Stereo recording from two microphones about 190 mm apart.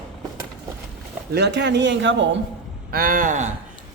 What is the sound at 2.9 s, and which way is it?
Speech, 45° right (ahead or behind).